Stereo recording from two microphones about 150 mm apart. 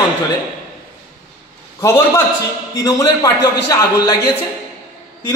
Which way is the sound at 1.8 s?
20° left (ahead or behind).